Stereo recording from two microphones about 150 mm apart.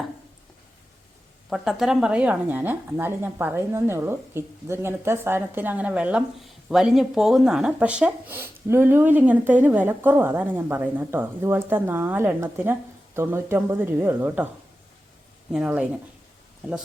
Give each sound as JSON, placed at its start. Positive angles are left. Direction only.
{"t": 1.5, "sound": "a woman's voice", "side_deg": 0}
{"t": 15.5, "sound": "speech", "side_deg": -5}